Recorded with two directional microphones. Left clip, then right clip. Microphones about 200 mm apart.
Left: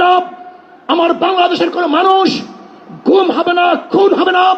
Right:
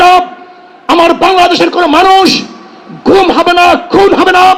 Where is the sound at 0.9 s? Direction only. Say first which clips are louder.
Right 6 dB; 25° right (ahead or behind).